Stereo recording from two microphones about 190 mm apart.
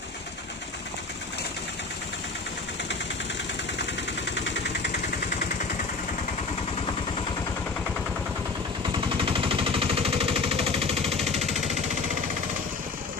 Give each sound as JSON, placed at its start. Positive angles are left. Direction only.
{"t": 4.3, "sound": "vehicle", "side_deg": 65}
{"t": 8.9, "sound": "machine gun", "side_deg": -25}